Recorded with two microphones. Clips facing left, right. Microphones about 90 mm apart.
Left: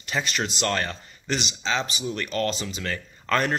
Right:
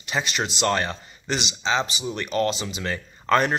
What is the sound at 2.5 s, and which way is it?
Speech, 5° right (ahead or behind).